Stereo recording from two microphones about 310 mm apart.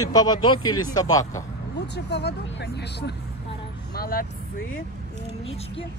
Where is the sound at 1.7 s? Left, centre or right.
Left.